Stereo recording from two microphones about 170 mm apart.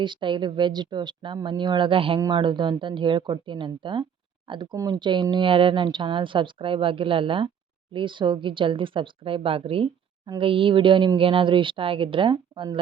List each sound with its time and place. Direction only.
0.0 s speech: 30° right (ahead or behind)